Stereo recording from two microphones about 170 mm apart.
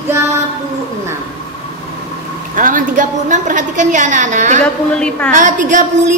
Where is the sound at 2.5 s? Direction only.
50° right (ahead or behind).